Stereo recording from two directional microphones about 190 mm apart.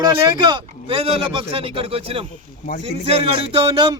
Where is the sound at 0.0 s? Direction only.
25° right (ahead or behind).